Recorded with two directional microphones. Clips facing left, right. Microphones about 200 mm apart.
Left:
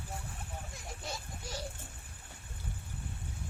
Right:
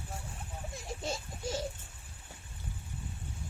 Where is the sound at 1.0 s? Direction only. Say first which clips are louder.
Right 7 dB; 25° right (ahead or behind).